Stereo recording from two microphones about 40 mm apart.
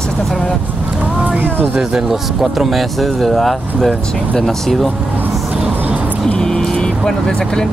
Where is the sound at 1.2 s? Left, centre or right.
Right.